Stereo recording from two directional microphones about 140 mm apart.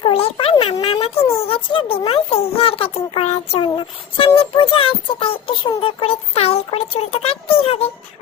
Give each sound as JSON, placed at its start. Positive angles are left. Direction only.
{"t": 0.0, "sound": "a child's voice", "side_deg": 45}